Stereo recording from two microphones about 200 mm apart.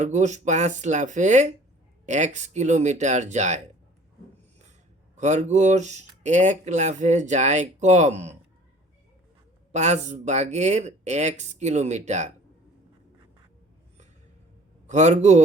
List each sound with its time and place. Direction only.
0.0 s speech: 35° right (ahead or behind)
5.1 s speech: 35° right (ahead or behind)
9.7 s speech: 35° right (ahead or behind)
14.8 s speech: 35° right (ahead or behind)